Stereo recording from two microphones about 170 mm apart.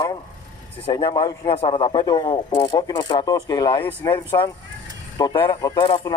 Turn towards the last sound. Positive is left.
turn(degrees=30)  # may be behind; listen again after turning